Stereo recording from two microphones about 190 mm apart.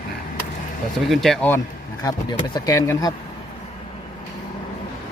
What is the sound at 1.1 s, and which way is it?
Speech, centre (ahead or behind).